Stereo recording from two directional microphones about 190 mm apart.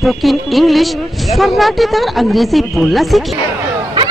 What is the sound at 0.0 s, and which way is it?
A man's voice, centre (ahead or behind).